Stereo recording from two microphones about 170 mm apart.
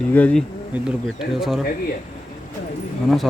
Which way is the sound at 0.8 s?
Centre (ahead or behind).